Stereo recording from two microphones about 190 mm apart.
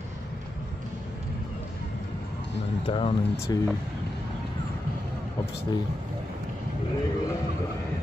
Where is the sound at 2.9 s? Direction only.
30° left (ahead or behind).